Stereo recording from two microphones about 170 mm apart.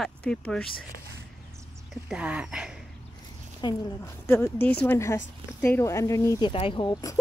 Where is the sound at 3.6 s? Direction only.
25° left (ahead or behind).